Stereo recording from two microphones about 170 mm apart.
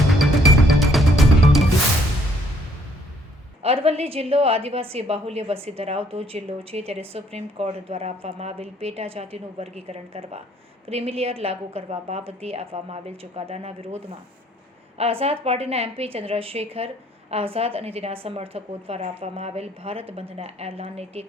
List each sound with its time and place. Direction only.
0.8 s music: centre (ahead or behind)
3.6 s a woman's voice: 35° right (ahead or behind)